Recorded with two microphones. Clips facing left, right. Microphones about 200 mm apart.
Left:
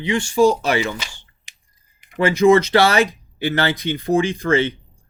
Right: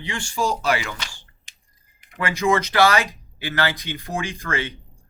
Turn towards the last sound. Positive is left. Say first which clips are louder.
# left 10 dB
turn(degrees=25)  # may be behind; listen again after turning